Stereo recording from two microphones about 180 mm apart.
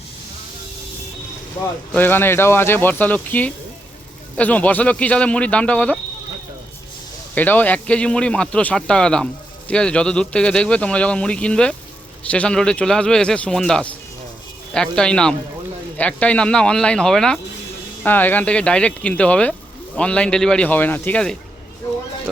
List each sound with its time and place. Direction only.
1.9 s speech: 10° left (ahead or behind)
7.3 s speech: 10° left (ahead or behind)